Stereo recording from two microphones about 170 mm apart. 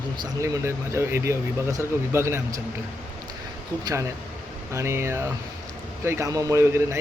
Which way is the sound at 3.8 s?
20° right (ahead or behind).